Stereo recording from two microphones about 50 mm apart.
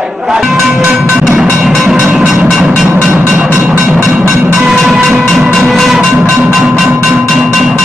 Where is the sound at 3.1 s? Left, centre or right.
Right.